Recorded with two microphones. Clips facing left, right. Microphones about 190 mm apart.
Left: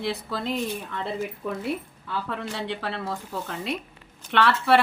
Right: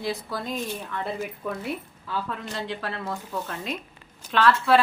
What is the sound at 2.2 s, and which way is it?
A woman's voice, 70° left (ahead or behind).